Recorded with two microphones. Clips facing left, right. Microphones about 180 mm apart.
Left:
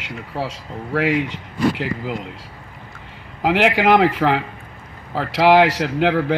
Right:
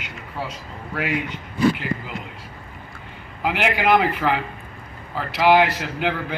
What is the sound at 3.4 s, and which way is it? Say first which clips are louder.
A man's voice: left 5 dB; 90° left.